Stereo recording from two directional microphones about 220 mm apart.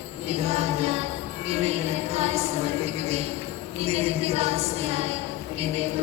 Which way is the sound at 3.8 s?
30° right (ahead or behind).